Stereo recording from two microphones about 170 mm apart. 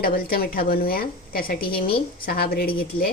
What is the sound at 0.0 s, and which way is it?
A woman's voice, 60° left (ahead or behind).